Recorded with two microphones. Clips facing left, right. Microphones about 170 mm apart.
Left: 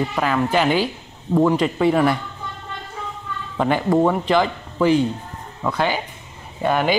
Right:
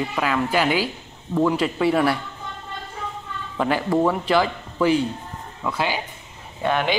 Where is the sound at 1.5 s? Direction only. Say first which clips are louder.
Left 3 dB; 5° right (ahead or behind).